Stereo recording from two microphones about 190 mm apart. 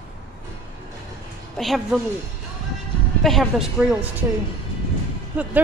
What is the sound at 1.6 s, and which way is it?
Speech, centre (ahead or behind).